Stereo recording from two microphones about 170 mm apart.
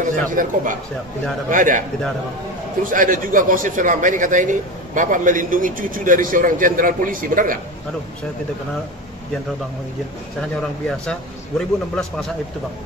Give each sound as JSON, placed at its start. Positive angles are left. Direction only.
{"t": 0.1, "sound": "a man's voice", "side_deg": -50}
{"t": 10.6, "sound": "a man's voice", "side_deg": 5}